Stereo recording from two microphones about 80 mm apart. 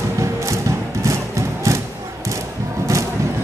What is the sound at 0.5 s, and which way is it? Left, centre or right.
Music, right.